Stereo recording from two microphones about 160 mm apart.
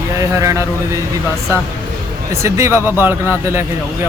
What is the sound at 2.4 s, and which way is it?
Speech, 15° right (ahead or behind).